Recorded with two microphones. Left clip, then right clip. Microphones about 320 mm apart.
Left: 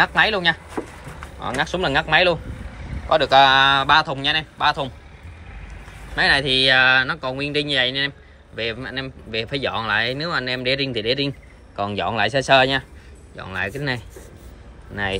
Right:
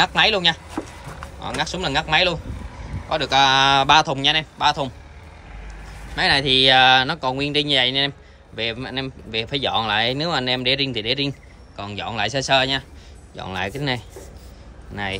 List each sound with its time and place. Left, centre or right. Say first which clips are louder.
0.0 s speech: even; centre
6.1 s speech: even; centre